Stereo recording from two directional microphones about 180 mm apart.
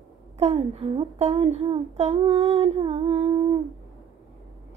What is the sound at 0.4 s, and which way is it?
Child singing, 35° right (ahead or behind).